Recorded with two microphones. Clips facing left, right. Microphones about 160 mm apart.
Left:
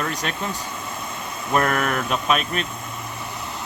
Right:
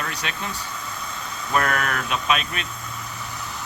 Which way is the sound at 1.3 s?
50° left (ahead or behind).